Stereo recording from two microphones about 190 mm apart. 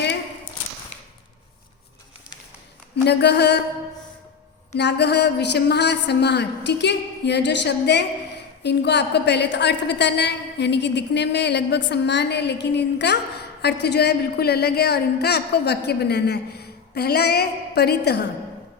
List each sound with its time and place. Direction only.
3.1 s a man's voice: 60° left (ahead or behind)
4.7 s a man's voice: 65° left (ahead or behind)